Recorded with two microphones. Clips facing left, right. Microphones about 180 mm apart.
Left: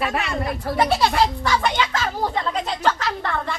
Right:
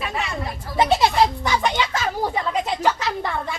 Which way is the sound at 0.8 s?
20° right (ahead or behind).